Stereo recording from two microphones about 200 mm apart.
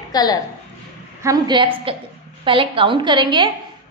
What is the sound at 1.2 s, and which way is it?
A woman's voice, 20° right (ahead or behind).